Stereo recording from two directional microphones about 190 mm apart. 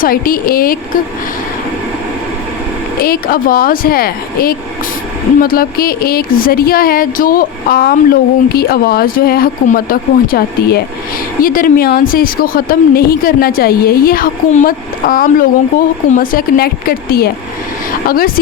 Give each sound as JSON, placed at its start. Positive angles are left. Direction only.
{"t": 0.0, "sound": "speech", "side_deg": 50}
{"t": 3.0, "sound": "speech", "side_deg": 50}